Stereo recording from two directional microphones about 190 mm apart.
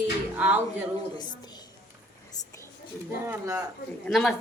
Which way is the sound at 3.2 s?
15° right (ahead or behind).